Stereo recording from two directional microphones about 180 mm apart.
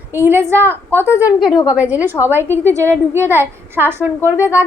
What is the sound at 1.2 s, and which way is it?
A woman's voice, centre (ahead or behind).